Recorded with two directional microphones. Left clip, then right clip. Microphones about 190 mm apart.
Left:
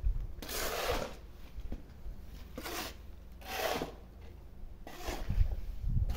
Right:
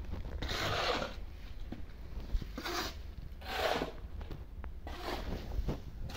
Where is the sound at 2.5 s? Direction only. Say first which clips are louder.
Right 3 dB; 40° left (ahead or behind).